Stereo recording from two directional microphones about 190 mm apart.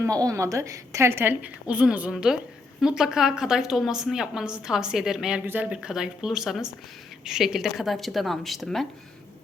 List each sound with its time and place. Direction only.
0.0 s a woman's voice: 20° right (ahead or behind); by 8.9 s centre (ahead or behind)